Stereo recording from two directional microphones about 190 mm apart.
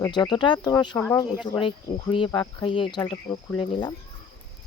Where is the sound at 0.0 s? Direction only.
25° left (ahead or behind).